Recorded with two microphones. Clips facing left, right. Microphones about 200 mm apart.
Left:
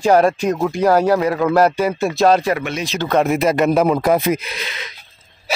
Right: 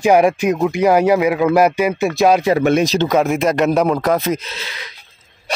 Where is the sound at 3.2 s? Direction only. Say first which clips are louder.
Even; centre (ahead or behind); by 4.9 s 20° left (ahead or behind).